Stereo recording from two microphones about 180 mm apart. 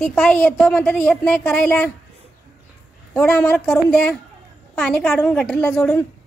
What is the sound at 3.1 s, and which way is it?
A woman's voice, 5° left (ahead or behind).